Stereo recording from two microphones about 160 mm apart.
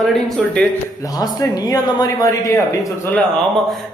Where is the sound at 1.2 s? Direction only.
25° left (ahead or behind).